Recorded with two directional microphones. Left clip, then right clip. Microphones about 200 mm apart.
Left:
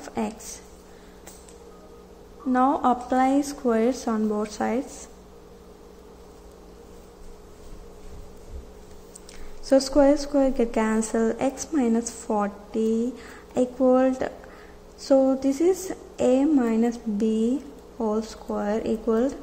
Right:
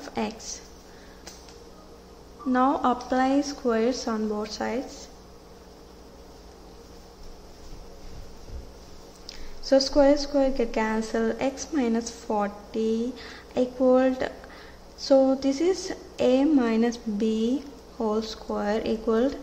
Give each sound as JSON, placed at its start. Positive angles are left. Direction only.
{"t": 0.0, "sound": "a sound", "side_deg": 10}
{"t": 2.5, "sound": "a woman's voice", "side_deg": 5}
{"t": 9.7, "sound": "a woman's voice", "side_deg": 15}